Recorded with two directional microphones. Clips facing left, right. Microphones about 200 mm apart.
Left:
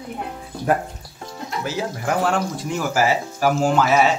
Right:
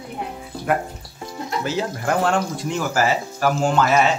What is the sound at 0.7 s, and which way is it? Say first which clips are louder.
Speech: left 1 dB; 30° left (ahead or behind).